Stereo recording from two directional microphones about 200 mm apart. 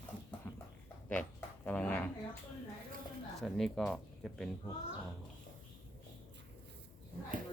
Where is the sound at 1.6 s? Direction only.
5° left (ahead or behind).